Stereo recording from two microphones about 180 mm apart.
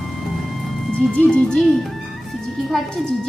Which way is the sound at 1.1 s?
5° left (ahead or behind).